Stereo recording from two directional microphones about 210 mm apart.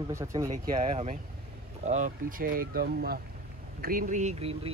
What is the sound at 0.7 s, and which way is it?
Speech, 30° right (ahead or behind).